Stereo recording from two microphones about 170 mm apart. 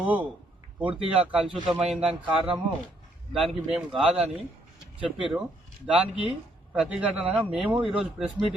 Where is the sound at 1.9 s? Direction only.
35° right (ahead or behind).